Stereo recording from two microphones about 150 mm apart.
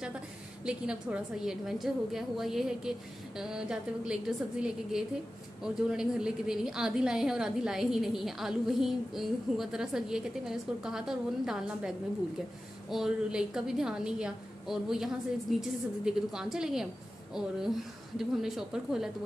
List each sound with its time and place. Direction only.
0.7 s a woman's voice: 5° right (ahead or behind)
12.9 s a woman's voice: 5° right (ahead or behind)